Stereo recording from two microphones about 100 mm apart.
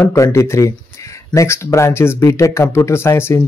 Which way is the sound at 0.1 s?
30° left (ahead or behind).